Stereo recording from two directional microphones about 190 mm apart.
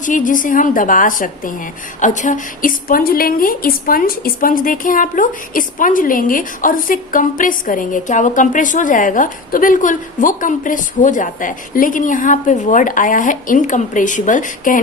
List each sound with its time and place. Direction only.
0.0 s a woman's voice: 45° left (ahead or behind)